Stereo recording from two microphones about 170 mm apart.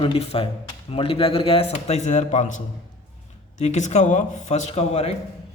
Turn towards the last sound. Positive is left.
turn(degrees=40)  # may be behind; listen again after turning